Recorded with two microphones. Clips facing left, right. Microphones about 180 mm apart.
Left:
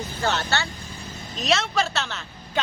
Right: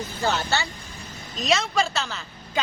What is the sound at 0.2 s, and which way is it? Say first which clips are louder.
A woman's voice: even; centre (ahead or behind).